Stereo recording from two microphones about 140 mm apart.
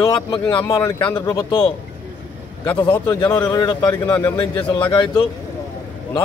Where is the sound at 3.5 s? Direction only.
25° left (ahead or behind).